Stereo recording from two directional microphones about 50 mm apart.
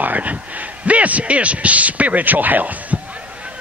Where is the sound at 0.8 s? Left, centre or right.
Right.